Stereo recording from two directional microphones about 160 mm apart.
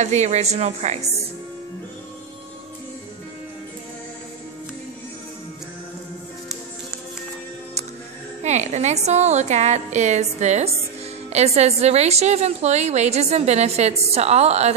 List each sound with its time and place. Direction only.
0.0 s a woman's voice: 45° right (ahead or behind)
8.4 s a woman's voice: 45° right (ahead or behind)